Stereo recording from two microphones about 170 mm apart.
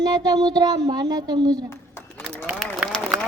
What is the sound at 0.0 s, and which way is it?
Child singing, 25° right (ahead or behind).